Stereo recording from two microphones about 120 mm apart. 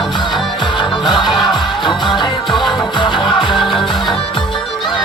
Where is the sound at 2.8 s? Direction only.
40° left (ahead or behind).